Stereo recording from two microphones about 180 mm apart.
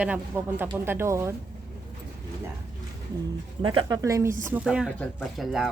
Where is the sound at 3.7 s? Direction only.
30° right (ahead or behind).